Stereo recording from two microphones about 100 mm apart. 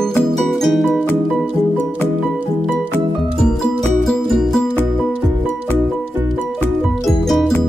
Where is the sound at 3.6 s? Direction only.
5° left (ahead or behind).